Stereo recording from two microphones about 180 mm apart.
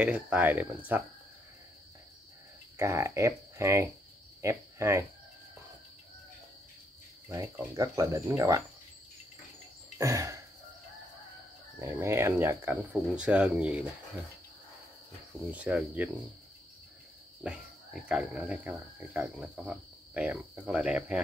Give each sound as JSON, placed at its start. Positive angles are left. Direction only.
{"t": 0.0, "sound": "speech", "side_deg": -10}
{"t": 2.8, "sound": "speech", "side_deg": -15}
{"t": 4.4, "sound": "cricket", "side_deg": -15}
{"t": 7.7, "sound": "speech", "side_deg": -20}
{"t": 9.9, "sound": "a sound", "side_deg": -15}
{"t": 11.8, "sound": "speech", "side_deg": -15}
{"t": 15.5, "sound": "speech", "side_deg": -10}
{"t": 17.4, "sound": "speech", "side_deg": -5}